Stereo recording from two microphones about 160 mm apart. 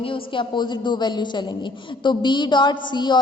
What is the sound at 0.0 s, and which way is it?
A woman's voice, 30° left (ahead or behind).